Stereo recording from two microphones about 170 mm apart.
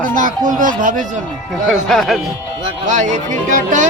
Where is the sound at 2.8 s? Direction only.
45° right (ahead or behind).